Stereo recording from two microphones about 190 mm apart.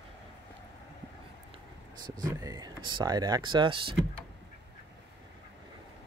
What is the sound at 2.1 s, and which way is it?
Speech, 20° right (ahead or behind).